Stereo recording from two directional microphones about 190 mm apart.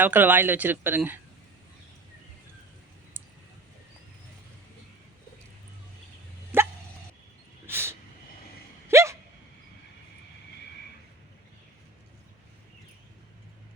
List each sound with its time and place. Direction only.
0.0 s speech: 10° right (ahead or behind)
6.5 s dog: 10° right (ahead or behind)
7.7 s a sound: 10° right (ahead or behind)
8.9 s hiccup: 15° right (ahead or behind)